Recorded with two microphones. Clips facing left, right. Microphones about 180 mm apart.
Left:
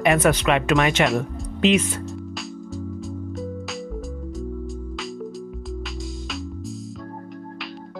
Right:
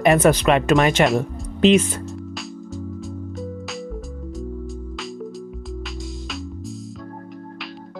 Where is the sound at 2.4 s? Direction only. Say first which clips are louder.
Even; centre (ahead or behind).